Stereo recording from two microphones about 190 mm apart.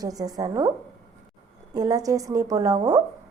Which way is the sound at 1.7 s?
20° right (ahead or behind).